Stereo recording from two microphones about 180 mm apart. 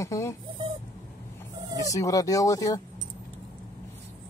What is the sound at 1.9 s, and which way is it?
Speech, 20° left (ahead or behind).